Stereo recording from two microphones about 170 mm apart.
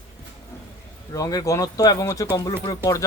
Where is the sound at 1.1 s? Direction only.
20° left (ahead or behind).